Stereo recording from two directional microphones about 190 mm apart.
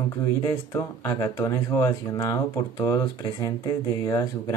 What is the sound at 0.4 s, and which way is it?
Speech, 15° left (ahead or behind).